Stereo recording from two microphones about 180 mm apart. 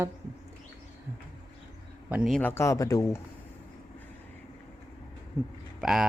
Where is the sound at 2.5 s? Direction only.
15° left (ahead or behind).